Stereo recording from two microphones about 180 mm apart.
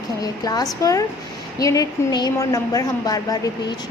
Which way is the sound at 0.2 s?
20° left (ahead or behind).